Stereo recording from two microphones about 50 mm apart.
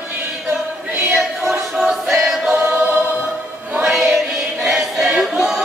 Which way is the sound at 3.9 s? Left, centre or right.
Centre.